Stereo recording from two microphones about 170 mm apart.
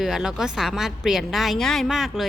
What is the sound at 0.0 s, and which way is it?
Speech, 5° right (ahead or behind).